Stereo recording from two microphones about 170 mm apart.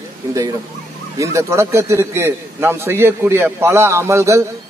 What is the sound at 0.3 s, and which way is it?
A man's voice, 20° right (ahead or behind).